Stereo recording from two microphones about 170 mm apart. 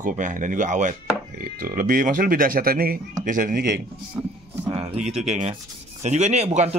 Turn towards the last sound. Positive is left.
turn(degrees=-40)  # may be behind; listen again after turning